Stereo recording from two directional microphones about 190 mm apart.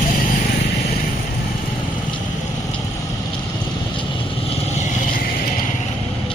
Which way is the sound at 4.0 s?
30° left (ahead or behind).